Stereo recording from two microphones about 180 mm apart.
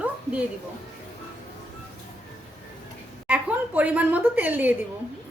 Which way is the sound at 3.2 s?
10° right (ahead or behind).